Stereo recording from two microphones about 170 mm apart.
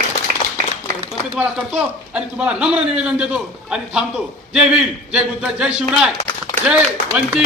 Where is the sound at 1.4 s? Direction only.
5° right (ahead or behind).